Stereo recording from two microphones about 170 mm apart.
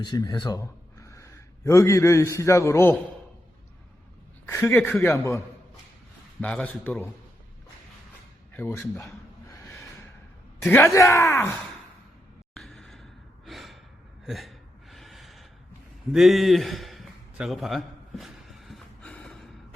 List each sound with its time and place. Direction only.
0.0 s a man's voice: 25° left (ahead or behind)
4.4 s speech: 15° left (ahead or behind)
6.4 s speech: 10° left (ahead or behind)
8.5 s a sound: 15° left (ahead or behind)
10.6 s speech: 15° left (ahead or behind)
12.5 s sigh: centre (ahead or behind)
14.3 s gasp: centre (ahead or behind)
16.1 s a sound: centre (ahead or behind)